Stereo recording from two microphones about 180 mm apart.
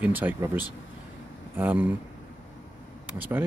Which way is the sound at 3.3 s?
15° right (ahead or behind).